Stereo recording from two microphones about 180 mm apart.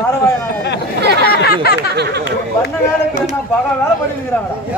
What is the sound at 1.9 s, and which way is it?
Speech, 65° right (ahead or behind).